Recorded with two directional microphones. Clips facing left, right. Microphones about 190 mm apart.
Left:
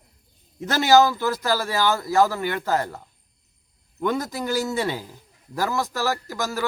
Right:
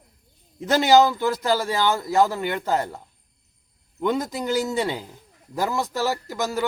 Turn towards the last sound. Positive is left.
turn(degrees=-20)  # may be behind; listen again after turning